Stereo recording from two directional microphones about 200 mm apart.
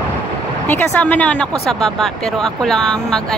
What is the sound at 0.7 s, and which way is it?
Speech, 10° left (ahead or behind).